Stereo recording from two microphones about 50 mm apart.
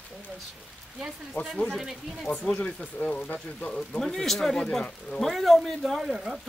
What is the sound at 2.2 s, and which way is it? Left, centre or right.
Speech, centre.